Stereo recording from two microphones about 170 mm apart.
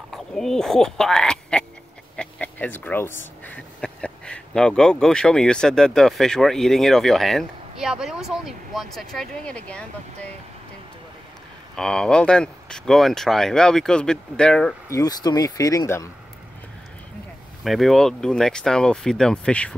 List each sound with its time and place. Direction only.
0.1 s speech: centre (ahead or behind)
11.7 s speech: 5° left (ahead or behind)
14.9 s speech: 20° left (ahead or behind)
17.6 s speech: centre (ahead or behind)